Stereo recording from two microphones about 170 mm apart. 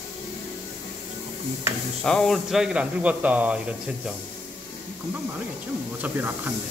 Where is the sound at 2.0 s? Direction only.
5° left (ahead or behind).